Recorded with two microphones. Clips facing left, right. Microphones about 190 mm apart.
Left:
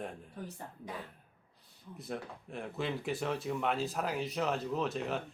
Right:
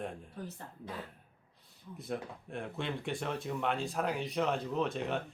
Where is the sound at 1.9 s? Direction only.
Centre (ahead or behind).